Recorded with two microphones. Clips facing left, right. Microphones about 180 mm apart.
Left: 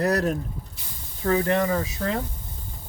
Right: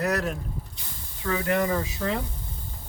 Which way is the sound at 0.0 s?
35° left (ahead or behind).